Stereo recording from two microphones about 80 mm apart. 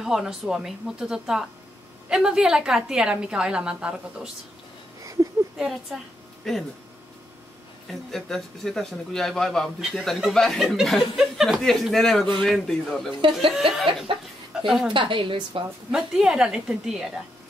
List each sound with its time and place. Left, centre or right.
0.0 s a woman's voice: centre
5.0 s a sound: right
5.6 s a man's voice: centre
8.1 s a man's voice: centre
14.5 s a sound: centre
14.9 s a woman's voice: right
15.9 s a woman's voice: centre